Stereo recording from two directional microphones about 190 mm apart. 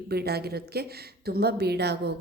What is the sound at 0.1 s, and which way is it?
A woman's voice, 55° right (ahead or behind).